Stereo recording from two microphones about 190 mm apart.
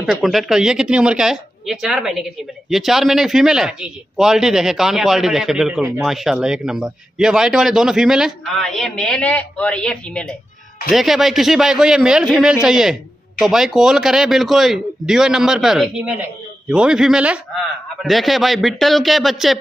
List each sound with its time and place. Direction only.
0.0 s a man's voice: centre (ahead or behind)